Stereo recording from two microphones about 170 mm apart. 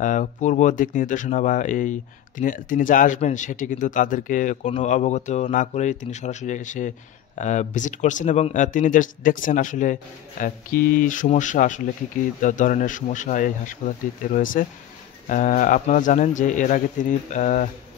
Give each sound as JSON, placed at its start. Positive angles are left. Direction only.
{"t": 0.0, "sound": "speech", "side_deg": 50}